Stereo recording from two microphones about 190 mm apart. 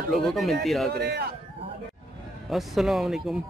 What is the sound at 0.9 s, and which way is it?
Speech, 55° right (ahead or behind).